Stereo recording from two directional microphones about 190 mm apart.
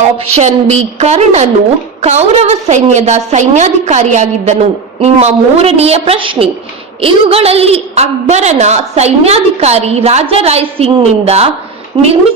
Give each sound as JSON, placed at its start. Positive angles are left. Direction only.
{"t": 0.3, "sound": "a woman's voice", "side_deg": -35}